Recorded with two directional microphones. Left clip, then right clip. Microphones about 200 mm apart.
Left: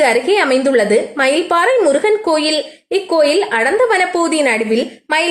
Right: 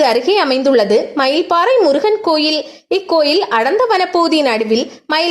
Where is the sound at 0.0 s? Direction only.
30° right (ahead or behind).